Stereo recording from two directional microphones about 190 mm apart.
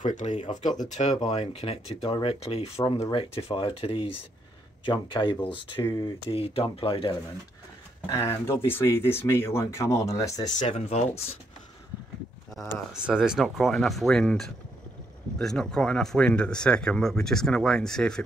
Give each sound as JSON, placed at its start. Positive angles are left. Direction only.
{"t": 0.0, "sound": "speech", "side_deg": 40}
{"t": 8.1, "sound": "speech", "side_deg": 15}
{"t": 10.6, "sound": "speech", "side_deg": 35}
{"t": 13.0, "sound": "speech", "side_deg": -5}